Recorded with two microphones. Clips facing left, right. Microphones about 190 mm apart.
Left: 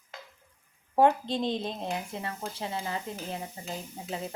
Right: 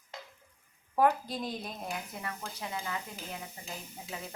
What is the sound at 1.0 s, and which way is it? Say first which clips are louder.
Speech: left 4 dB; 25° left (ahead or behind).